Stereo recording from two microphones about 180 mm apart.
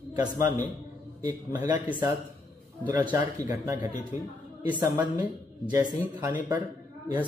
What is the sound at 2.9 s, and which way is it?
Speech, 20° right (ahead or behind).